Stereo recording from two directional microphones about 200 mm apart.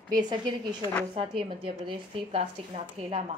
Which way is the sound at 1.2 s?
25° right (ahead or behind).